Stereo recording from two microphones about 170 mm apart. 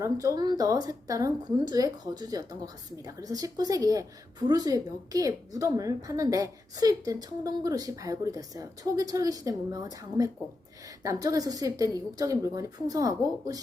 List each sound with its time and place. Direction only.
0.0 s a woman's voice: 20° right (ahead or behind)